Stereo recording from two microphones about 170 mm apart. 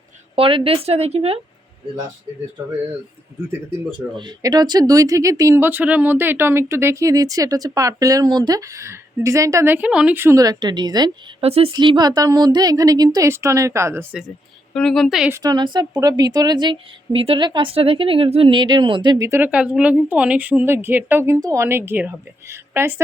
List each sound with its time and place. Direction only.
0.3 s speech: 35° right (ahead or behind)
4.2 s speech: 25° right (ahead or behind)
11.4 s speech: 35° right (ahead or behind)
11.7 s speech: 25° right (ahead or behind)
14.2 s speech: centre (ahead or behind)
15.3 s speech: 20° right (ahead or behind)